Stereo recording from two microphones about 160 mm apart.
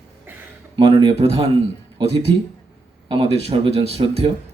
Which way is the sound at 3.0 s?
35° right (ahead or behind).